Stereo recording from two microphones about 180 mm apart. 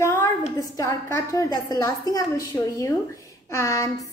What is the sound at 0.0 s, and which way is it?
A woman's voice, 15° left (ahead or behind).